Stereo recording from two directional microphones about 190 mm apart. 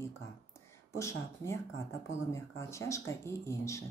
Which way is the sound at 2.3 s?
15° left (ahead or behind).